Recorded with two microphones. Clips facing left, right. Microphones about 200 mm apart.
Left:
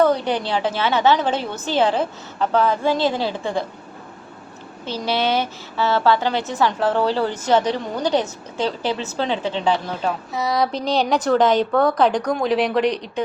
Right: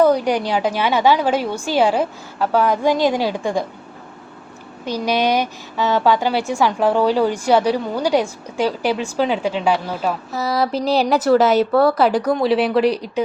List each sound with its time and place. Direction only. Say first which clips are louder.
0.0 s a woman's voice: right 3 dB; 10° right (ahead or behind)
4.9 s a woman's voice: right 3 dB; 15° right (ahead or behind)